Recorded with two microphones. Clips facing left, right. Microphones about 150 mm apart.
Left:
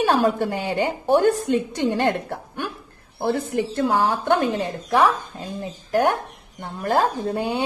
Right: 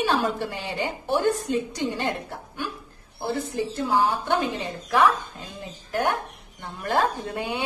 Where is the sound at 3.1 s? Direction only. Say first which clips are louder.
Left 5 dB; 65° left (ahead or behind).